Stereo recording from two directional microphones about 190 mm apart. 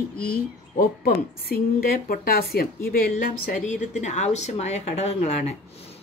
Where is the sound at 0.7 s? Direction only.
50° left (ahead or behind).